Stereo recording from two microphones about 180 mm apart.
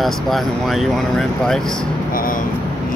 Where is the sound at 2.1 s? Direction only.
50° left (ahead or behind).